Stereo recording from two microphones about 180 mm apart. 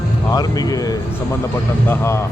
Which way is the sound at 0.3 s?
20° left (ahead or behind).